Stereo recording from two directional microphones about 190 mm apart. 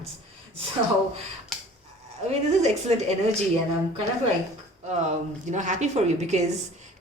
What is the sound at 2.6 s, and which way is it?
Speech, 35° right (ahead or behind).